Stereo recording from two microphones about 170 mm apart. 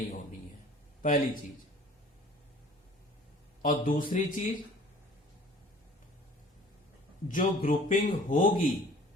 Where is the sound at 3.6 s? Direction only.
50° left (ahead or behind).